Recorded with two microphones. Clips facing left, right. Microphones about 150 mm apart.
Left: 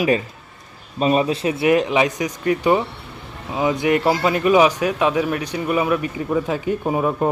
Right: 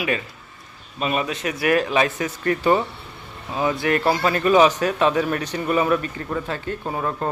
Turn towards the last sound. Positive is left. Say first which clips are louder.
# left 6 dB
turn(degrees=15)  # may be behind; listen again after turning